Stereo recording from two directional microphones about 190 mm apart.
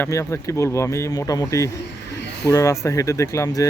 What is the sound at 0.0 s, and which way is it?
Speech, 15° left (ahead or behind).